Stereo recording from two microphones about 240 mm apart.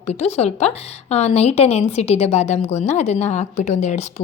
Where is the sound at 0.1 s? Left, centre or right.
Left.